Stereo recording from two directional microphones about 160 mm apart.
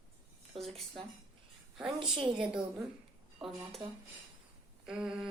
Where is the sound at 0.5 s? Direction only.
Centre (ahead or behind).